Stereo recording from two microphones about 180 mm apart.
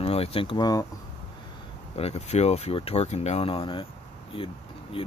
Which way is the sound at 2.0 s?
35° left (ahead or behind).